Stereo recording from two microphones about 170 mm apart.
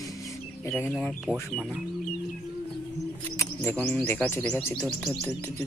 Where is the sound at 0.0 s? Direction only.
20° left (ahead or behind).